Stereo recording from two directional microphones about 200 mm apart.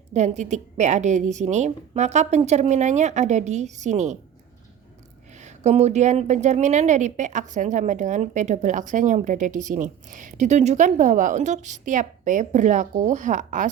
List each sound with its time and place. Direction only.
0.1 s a woman's voice: 35° right (ahead or behind)
5.4 s a woman's voice: 35° right (ahead or behind)